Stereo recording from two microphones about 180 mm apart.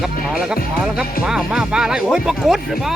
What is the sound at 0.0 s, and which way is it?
Speech, centre (ahead or behind).